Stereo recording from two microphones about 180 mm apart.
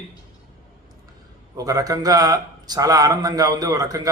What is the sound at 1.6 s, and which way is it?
A man's voice, 20° right (ahead or behind).